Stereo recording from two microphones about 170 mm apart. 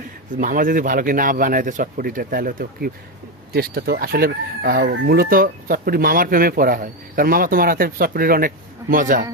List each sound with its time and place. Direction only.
0.3 s chicken: 55° right (ahead or behind)
3.5 s chicken: 65° right (ahead or behind)